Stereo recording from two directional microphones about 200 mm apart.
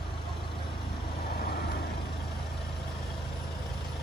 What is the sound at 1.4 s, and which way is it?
Vehicle, 50° left (ahead or behind).